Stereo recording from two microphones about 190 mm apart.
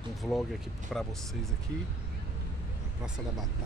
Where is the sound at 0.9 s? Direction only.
Centre (ahead or behind).